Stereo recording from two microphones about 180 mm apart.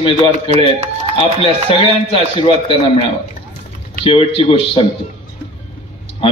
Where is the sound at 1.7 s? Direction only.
30° left (ahead or behind).